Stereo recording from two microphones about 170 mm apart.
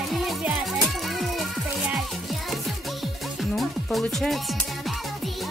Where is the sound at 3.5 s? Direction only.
Centre (ahead or behind).